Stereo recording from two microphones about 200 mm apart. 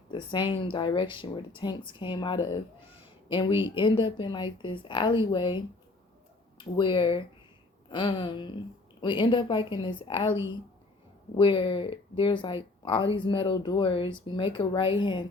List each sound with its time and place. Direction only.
0.1 s speech: 25° left (ahead or behind)